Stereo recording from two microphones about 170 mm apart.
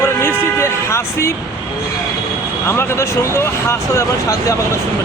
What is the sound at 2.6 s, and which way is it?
Speech, 15° left (ahead or behind).